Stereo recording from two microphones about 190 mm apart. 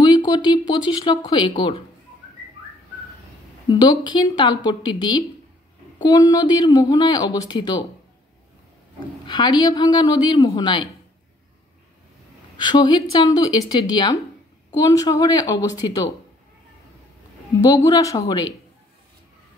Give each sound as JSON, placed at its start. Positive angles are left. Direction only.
{"t": 0.0, "sound": "speech", "side_deg": 25}
{"t": 3.6, "sound": "speech", "side_deg": 20}
{"t": 9.2, "sound": "speech", "side_deg": 25}
{"t": 12.5, "sound": "speech", "side_deg": 25}
{"t": 17.6, "sound": "speech", "side_deg": 20}